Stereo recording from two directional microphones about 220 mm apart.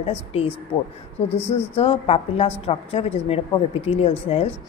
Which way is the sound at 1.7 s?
25° left (ahead or behind).